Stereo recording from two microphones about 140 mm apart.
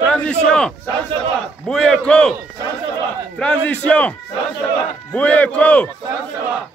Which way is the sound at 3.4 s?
10° left (ahead or behind).